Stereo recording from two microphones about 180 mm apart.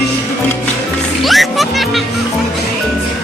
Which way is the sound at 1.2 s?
Centre (ahead or behind).